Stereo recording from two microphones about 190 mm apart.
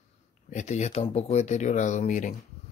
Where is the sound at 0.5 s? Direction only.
40° left (ahead or behind).